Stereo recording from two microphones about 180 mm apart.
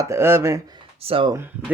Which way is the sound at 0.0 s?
15° right (ahead or behind).